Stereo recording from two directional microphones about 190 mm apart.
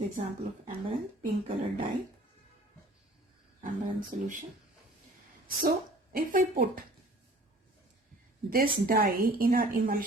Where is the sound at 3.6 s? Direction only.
45° right (ahead or behind).